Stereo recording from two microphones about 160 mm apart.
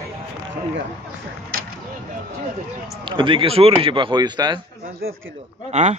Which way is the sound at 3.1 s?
30° right (ahead or behind).